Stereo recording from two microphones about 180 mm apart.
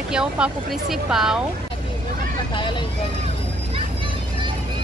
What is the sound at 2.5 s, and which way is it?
Speech, 25° left (ahead or behind).